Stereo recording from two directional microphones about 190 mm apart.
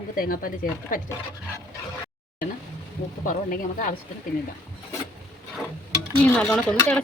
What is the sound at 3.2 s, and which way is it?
Speech, 45° left (ahead or behind).